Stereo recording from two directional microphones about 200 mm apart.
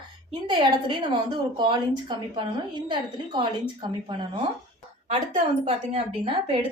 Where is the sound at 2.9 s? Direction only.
25° right (ahead or behind).